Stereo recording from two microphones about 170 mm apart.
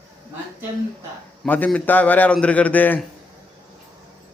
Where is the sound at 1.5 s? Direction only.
10° left (ahead or behind).